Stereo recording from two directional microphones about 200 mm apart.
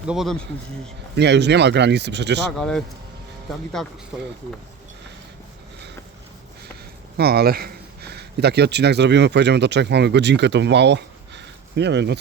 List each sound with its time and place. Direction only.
0.1 s speech: centre (ahead or behind)
1.1 s speech: 60° right (ahead or behind)
2.6 s speech: 5° left (ahead or behind)
7.2 s speech: 50° right (ahead or behind)